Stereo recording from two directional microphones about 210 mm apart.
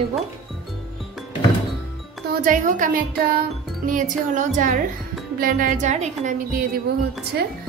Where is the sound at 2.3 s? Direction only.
40° right (ahead or behind).